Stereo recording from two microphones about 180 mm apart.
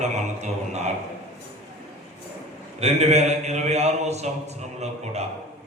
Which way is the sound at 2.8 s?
40° right (ahead or behind).